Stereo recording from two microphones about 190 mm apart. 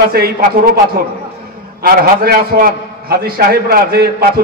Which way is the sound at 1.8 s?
50° right (ahead or behind).